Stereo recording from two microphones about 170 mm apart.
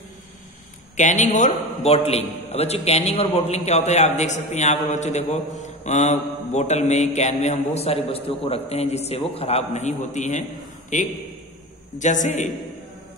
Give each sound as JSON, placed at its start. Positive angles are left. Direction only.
{"t": 0.9, "sound": "a man's voice", "side_deg": 45}